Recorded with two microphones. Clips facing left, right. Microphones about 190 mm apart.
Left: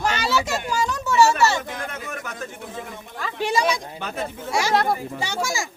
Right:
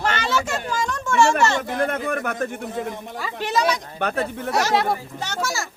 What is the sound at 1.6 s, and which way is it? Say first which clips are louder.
Speech: right 9 dB; 55° right (ahead or behind).